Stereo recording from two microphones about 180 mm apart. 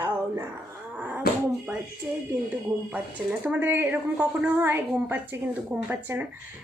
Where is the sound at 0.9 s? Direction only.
10° right (ahead or behind).